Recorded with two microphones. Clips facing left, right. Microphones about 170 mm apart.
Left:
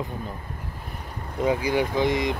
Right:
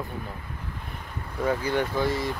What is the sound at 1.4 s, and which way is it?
Speech, 15° left (ahead or behind).